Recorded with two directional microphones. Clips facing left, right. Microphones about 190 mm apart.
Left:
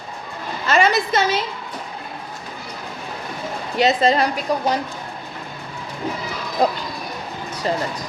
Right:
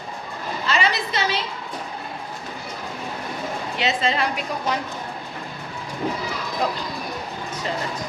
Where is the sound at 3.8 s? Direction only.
40° left (ahead or behind).